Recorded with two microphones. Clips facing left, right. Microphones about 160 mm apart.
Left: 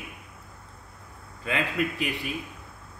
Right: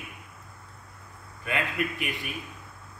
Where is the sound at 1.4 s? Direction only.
25° left (ahead or behind).